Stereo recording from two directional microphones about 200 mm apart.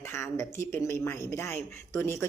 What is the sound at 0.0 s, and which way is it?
Speech, 15° left (ahead or behind).